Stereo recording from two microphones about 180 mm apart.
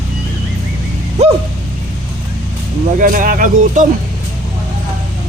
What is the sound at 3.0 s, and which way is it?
Speech, 50° right (ahead or behind).